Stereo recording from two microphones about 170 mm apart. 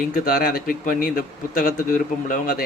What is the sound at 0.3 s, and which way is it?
Speech, 65° left (ahead or behind).